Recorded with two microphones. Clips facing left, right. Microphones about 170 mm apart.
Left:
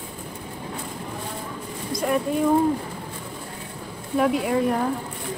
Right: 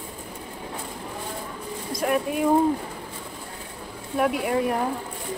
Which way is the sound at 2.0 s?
5° right (ahead or behind).